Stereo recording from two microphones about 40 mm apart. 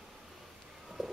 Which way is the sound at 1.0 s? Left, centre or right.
Centre.